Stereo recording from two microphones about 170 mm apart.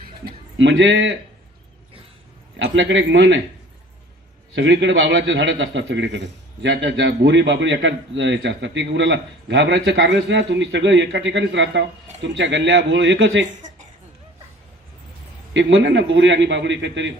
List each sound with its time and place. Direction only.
0.3 s speech: 90° right
2.6 s a man's voice: 90° right
4.5 s a man's voice: 90° right
15.5 s a man's voice: 90° right